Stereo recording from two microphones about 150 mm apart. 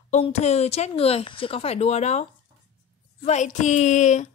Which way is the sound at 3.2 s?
50° left (ahead or behind).